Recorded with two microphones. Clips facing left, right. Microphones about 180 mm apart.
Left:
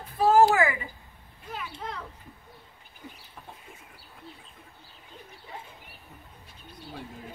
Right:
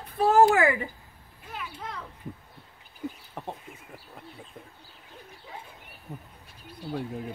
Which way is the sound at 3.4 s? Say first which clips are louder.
Right 12 dB; 65° right (ahead or behind).